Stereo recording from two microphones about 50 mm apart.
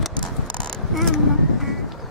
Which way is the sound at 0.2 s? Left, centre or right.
Centre.